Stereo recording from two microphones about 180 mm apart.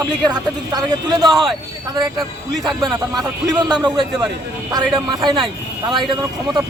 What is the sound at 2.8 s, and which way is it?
A man's voice, 25° right (ahead or behind).